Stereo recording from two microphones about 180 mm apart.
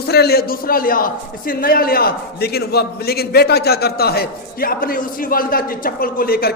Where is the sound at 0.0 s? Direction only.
60° left (ahead or behind).